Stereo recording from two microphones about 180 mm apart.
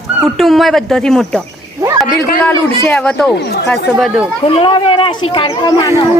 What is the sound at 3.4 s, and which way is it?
Speech, 65° left (ahead or behind).